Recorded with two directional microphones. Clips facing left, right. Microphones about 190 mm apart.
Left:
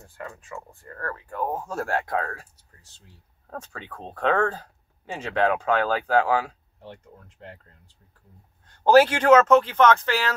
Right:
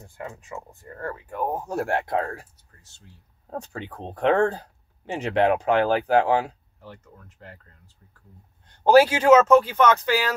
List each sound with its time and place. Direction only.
0.0 s speech: 20° right (ahead or behind)
3.4 s speech: 20° right (ahead or behind)
6.8 s speech: 30° left (ahead or behind)
8.8 s speech: 10° right (ahead or behind)